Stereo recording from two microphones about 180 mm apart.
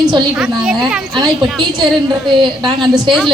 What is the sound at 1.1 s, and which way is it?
Speech, 25° right (ahead or behind).